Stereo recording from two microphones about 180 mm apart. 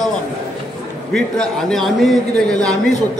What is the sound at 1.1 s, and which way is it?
A man's voice, centre (ahead or behind).